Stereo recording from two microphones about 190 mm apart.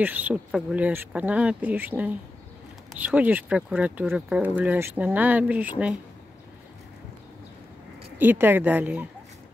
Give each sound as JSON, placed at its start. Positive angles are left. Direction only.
{"t": 0.0, "sound": "speech", "side_deg": -10}
{"t": 8.2, "sound": "speech", "side_deg": -10}